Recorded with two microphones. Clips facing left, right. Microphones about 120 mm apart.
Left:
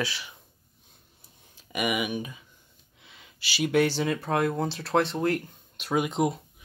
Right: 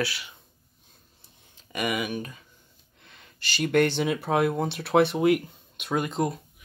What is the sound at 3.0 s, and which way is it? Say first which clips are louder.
Gasp: right 2 dB; 5° left (ahead or behind).